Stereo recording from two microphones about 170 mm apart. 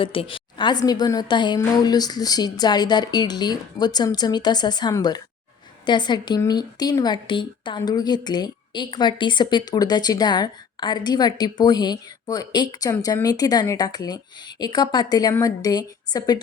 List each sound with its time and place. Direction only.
0.0 s speech: 30° left (ahead or behind)